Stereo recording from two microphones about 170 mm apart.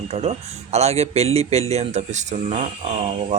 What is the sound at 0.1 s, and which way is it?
Speech, 40° right (ahead or behind).